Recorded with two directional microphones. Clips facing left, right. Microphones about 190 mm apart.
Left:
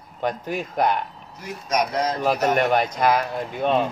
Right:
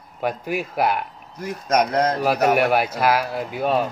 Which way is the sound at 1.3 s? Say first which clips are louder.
Right 4 dB; 55° right (ahead or behind).